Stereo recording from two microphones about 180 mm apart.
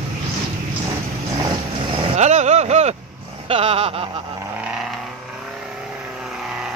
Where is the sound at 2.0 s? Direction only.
40° right (ahead or behind).